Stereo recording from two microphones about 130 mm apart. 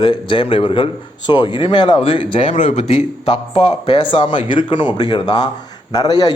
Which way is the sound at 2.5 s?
65° left (ahead or behind).